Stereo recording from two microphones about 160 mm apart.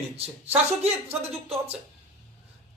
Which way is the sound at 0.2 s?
40° right (ahead or behind).